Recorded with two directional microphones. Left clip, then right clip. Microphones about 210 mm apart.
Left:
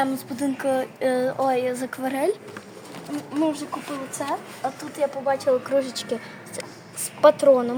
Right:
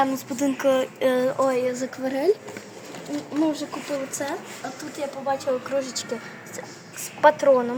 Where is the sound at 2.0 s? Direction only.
50° left (ahead or behind).